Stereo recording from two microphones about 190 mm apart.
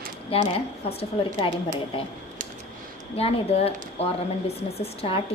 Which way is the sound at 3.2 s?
30° left (ahead or behind).